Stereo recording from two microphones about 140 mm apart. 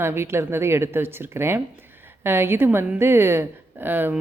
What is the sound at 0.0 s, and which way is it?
Speech, 15° right (ahead or behind).